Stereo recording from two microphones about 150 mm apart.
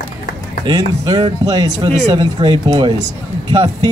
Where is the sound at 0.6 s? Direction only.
30° right (ahead or behind).